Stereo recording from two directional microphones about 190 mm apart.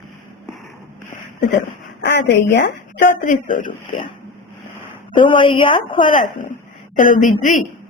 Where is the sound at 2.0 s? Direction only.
65° left (ahead or behind).